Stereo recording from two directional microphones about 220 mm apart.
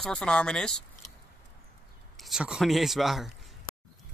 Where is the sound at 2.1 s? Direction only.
Centre (ahead or behind).